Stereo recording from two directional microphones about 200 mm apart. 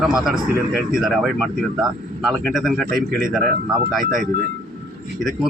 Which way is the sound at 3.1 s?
45° right (ahead or behind).